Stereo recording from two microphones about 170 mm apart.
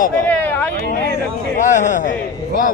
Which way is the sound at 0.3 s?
10° left (ahead or behind).